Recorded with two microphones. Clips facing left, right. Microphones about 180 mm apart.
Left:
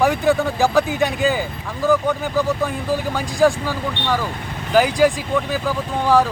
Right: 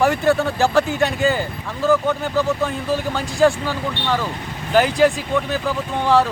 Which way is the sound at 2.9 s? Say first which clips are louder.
Even; 10° left (ahead or behind).